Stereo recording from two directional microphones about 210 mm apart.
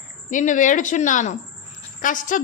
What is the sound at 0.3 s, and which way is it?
A man's voice, 35° left (ahead or behind).